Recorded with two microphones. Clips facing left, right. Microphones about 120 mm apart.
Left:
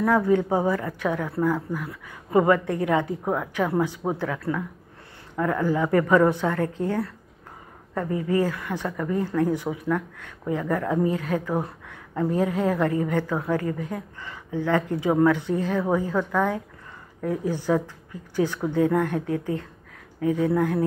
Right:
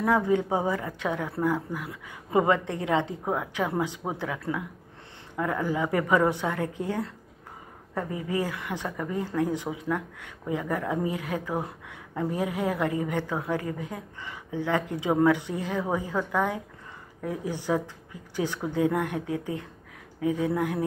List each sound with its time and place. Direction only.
0.0 s a woman's voice: 20° right (ahead or behind)
8.3 s a woman's voice: 15° right (ahead or behind)
20.2 s speech: 45° left (ahead or behind)
20.5 s speech: 20° right (ahead or behind)